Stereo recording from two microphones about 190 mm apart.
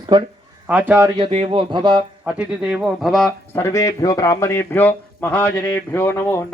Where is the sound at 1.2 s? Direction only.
30° right (ahead or behind).